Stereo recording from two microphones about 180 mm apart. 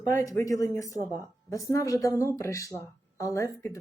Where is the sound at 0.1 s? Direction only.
15° left (ahead or behind).